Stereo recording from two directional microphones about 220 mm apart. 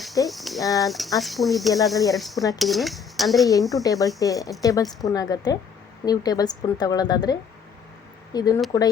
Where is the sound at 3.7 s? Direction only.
15° left (ahead or behind).